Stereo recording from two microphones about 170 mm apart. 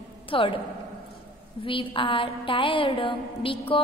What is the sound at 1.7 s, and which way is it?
A woman's voice, 30° left (ahead or behind).